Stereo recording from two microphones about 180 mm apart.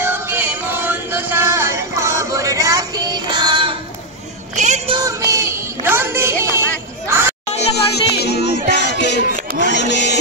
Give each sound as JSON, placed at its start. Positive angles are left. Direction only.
{"t": 0.0, "sound": "music", "side_deg": -10}
{"t": 4.6, "sound": "music", "side_deg": -40}
{"t": 4.9, "sound": "a sound", "side_deg": -20}
{"t": 7.7, "sound": "music", "side_deg": 65}